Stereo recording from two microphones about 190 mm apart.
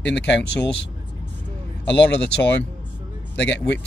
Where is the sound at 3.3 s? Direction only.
65° left (ahead or behind).